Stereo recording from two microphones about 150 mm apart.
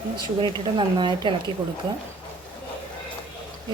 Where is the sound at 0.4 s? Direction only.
30° right (ahead or behind).